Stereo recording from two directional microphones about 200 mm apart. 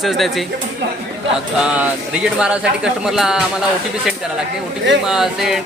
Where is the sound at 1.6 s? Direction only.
5° right (ahead or behind).